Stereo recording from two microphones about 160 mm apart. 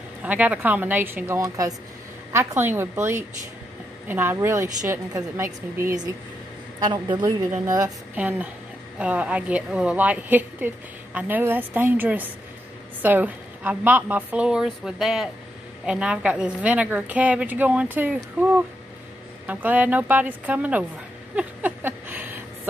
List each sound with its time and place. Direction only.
0.2 s a woman's voice: 10° right (ahead or behind)
6.8 s a woman's voice: 30° right (ahead or behind)
8.2 s a woman's voice: 10° right (ahead or behind)
21.4 s a sound: 10° right (ahead or behind)